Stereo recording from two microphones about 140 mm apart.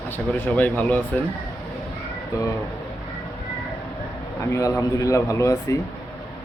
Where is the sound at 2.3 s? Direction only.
20° left (ahead or behind).